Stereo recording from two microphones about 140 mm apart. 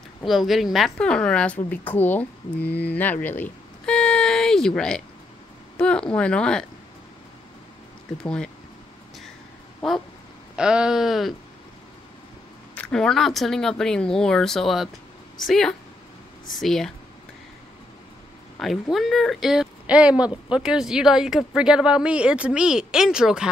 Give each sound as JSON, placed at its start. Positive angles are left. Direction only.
{"t": 0.2, "sound": "a woman's voice", "side_deg": 0}
{"t": 8.2, "sound": "speech", "side_deg": 5}
{"t": 10.5, "sound": "speech", "side_deg": -5}
{"t": 12.7, "sound": "speech", "side_deg": 5}
{"t": 18.6, "sound": "speech", "side_deg": 0}